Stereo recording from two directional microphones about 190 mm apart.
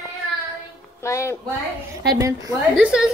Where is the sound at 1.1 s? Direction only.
15° left (ahead or behind).